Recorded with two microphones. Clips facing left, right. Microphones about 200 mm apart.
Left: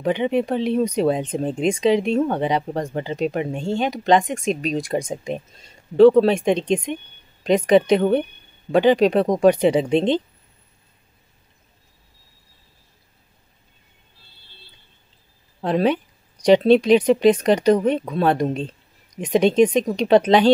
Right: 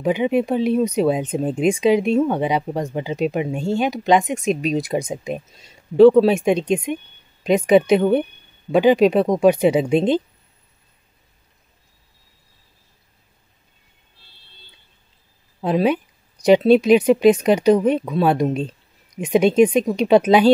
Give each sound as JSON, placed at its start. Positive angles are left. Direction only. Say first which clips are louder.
{"t": 0.0, "sound": "speech", "louder": "right 2 dB", "side_deg": -10}
{"t": 15.6, "sound": "speech", "louder": "right 1 dB", "side_deg": -10}